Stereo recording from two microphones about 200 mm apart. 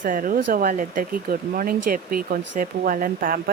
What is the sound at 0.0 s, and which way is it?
Speech, 40° right (ahead or behind).